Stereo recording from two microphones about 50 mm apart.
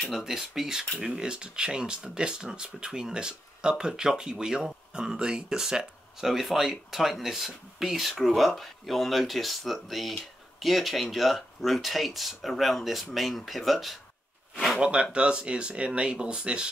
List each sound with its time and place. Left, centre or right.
0.1 s speech: centre
14.8 s speech: right